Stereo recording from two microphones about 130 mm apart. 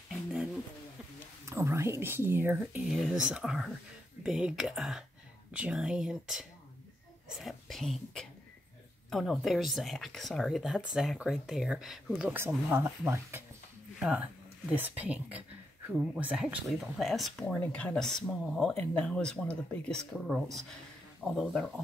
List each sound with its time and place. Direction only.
1.4 s speech: 20° right (ahead or behind)
2.9 s speech: 5° right (ahead or behind)